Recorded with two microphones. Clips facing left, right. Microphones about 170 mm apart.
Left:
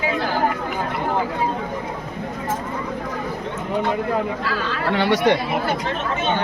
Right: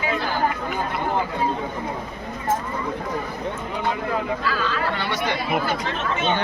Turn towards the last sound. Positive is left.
turn(degrees=75)  # may be behind; listen again after turning